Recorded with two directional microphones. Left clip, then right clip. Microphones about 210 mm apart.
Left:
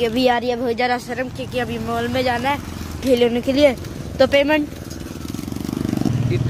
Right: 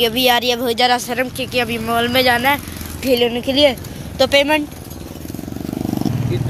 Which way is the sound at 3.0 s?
15° left (ahead or behind).